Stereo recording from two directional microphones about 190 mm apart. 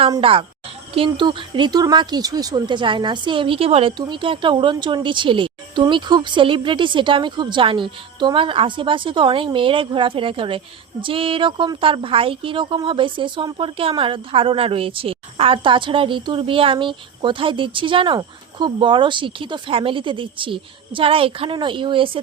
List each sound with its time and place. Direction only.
0.1 s speech: 30° right (ahead or behind)